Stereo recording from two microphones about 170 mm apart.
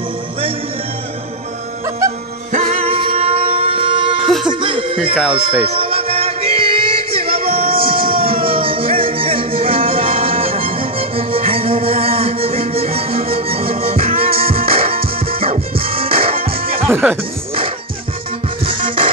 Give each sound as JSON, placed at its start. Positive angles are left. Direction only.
{"t": 2.5, "sound": "music", "side_deg": -35}
{"t": 4.3, "sound": "music", "side_deg": 0}
{"t": 4.6, "sound": "music", "side_deg": -30}
{"t": 16.8, "sound": "speech", "side_deg": -10}
{"t": 18.7, "sound": "music", "side_deg": -35}